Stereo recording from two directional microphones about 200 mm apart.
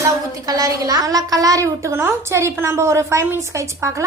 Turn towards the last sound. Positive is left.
turn(degrees=-15)  # may be behind; listen again after turning